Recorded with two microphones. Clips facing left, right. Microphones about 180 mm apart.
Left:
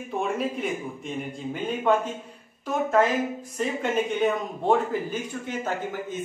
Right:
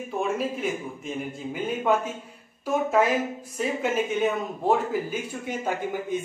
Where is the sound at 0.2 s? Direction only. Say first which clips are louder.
Right 1 dB; centre (ahead or behind).